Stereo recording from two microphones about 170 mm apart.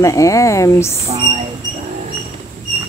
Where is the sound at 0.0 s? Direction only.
20° left (ahead or behind).